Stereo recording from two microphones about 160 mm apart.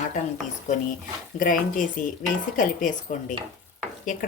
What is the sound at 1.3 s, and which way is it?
Speech, 55° left (ahead or behind).